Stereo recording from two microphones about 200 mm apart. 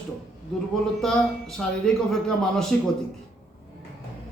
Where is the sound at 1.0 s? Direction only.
5° left (ahead or behind).